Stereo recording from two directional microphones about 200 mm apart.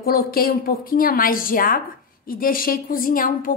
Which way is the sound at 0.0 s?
50° left (ahead or behind).